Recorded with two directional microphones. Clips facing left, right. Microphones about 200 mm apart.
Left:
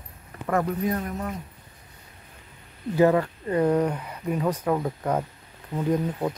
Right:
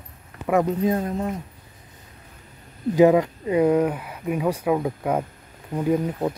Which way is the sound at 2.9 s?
15° right (ahead or behind).